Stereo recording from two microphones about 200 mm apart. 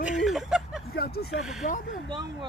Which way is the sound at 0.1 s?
Centre (ahead or behind).